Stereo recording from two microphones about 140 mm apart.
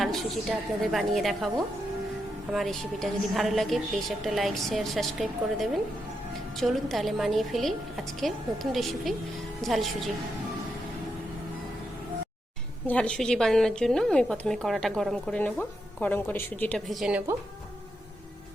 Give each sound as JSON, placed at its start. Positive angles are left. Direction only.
{"t": 0.0, "sound": "a woman's voice", "side_deg": 0}
{"t": 12.9, "sound": "a woman's voice", "side_deg": 5}
{"t": 16.9, "sound": "a woman's voice", "side_deg": -5}